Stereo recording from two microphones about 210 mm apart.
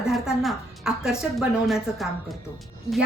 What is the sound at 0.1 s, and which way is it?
A woman's voice, centre (ahead or behind).